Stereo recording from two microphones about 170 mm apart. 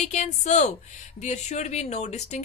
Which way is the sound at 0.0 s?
40° left (ahead or behind).